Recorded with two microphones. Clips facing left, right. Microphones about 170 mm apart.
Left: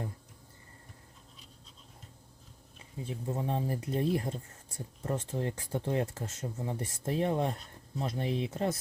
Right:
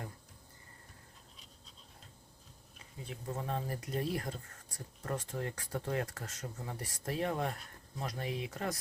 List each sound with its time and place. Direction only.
3.1 s speech: 25° left (ahead or behind)